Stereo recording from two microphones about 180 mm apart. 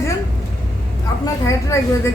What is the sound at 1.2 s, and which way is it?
Speech, 15° left (ahead or behind).